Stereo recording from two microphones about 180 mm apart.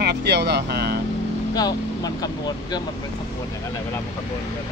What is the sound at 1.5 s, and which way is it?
Speech, 20° left (ahead or behind).